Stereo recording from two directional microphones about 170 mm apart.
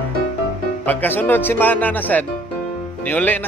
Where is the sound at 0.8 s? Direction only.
10° left (ahead or behind).